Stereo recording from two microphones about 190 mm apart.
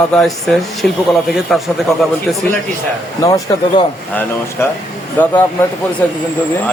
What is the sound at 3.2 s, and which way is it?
Speech, 15° left (ahead or behind).